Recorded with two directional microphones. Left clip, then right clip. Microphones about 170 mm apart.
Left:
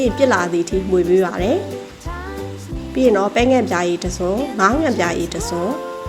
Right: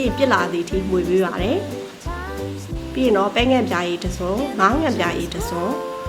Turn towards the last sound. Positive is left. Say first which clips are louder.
# left 2 dB
turn(degrees=5)  # may be behind; listen again after turning